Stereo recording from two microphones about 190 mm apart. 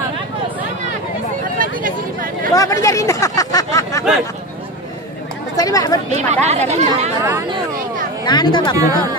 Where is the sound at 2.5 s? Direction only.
15° left (ahead or behind).